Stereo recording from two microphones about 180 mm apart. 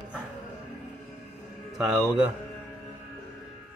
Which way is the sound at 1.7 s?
Centre (ahead or behind).